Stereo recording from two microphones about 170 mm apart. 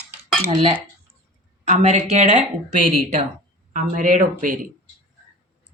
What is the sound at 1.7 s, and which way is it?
Speech, 40° right (ahead or behind).